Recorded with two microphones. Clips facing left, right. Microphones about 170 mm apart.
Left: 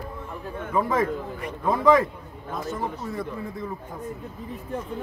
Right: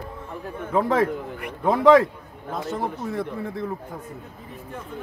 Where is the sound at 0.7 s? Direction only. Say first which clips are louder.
Right 3 dB; 75° right (ahead or behind).